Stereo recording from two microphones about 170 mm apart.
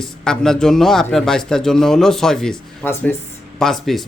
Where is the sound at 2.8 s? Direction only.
15° left (ahead or behind).